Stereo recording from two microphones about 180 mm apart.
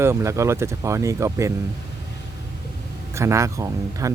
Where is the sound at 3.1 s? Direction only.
15° right (ahead or behind).